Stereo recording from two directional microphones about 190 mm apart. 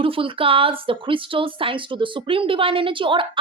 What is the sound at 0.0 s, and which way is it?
Speech, 30° right (ahead or behind).